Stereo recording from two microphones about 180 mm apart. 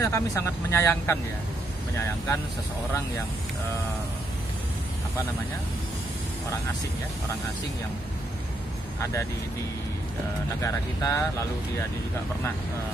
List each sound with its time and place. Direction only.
0.0 s speech: 15° left (ahead or behind)
10.6 s speech: 15° left (ahead or behind)